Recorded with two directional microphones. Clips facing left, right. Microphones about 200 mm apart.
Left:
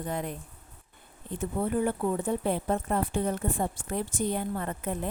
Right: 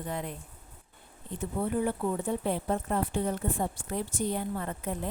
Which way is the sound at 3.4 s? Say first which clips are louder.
Left 1 dB; 50° left (ahead or behind).